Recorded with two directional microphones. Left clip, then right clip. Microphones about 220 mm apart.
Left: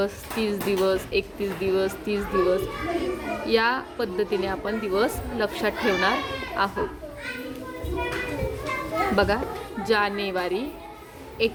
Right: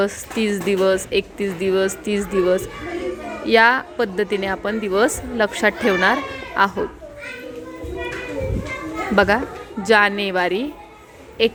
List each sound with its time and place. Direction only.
0.0 s a woman's voice: 30° right (ahead or behind)
9.1 s a woman's voice: 35° right (ahead or behind)